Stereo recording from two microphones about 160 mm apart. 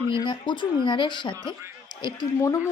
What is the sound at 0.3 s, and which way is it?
A woman's voice, 30° left (ahead or behind).